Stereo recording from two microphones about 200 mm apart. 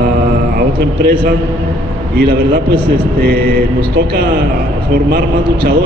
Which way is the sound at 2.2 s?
50° right (ahead or behind).